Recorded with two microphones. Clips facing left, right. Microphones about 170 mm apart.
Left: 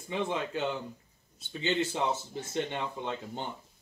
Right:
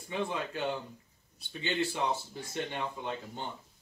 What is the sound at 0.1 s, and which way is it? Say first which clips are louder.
Speech: left 2 dB; 20° left (ahead or behind).